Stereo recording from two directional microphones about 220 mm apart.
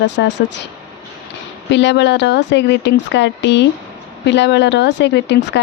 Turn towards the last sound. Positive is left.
turn(degrees=50)  # may be behind; listen again after turning